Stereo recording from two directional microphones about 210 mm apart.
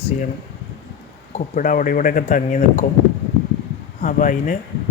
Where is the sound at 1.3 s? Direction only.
40° left (ahead or behind).